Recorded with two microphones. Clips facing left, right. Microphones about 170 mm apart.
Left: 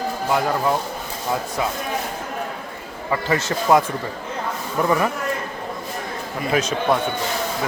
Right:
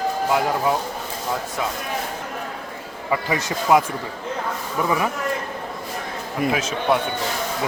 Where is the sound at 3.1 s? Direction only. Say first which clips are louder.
Left 2 dB; 15° right (ahead or behind).